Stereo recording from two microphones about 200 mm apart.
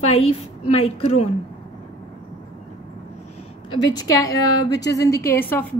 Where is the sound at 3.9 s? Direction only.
20° left (ahead or behind).